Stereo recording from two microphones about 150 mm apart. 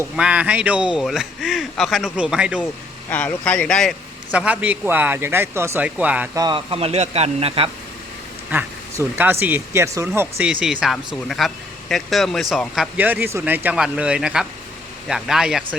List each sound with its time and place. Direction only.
0.2 s speech: 10° right (ahead or behind)
3.1 s speech: 10° left (ahead or behind)
4.3 s speech: 10° right (ahead or behind)
6.3 s speech: 25° right (ahead or behind)
6.7 s speech: 40° right (ahead or behind)
8.4 s speech: 15° right (ahead or behind)